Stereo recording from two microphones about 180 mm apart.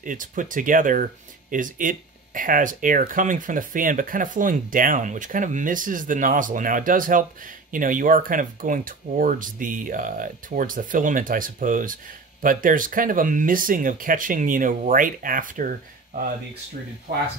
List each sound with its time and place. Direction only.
0.0 s speech: 45° right (ahead or behind)